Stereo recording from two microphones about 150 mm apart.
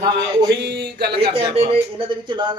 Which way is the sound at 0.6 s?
90° right.